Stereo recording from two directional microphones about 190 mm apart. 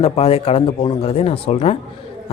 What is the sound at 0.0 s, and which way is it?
A man's voice, 30° left (ahead or behind).